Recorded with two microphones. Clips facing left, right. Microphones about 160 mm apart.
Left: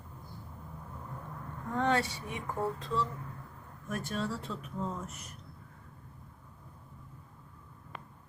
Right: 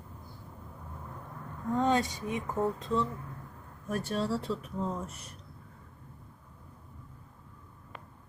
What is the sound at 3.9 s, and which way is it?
Speech, 35° right (ahead or behind).